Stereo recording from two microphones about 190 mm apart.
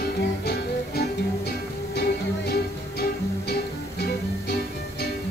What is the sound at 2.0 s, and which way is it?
Music, 55° left (ahead or behind).